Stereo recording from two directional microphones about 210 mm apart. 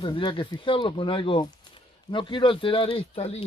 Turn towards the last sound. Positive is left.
turn(degrees=30)  # may be behind; listen again after turning